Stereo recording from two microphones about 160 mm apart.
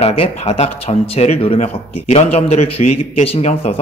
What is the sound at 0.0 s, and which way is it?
Speech, 40° left (ahead or behind).